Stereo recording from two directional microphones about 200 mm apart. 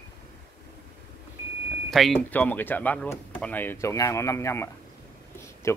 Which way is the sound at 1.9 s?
Centre (ahead or behind).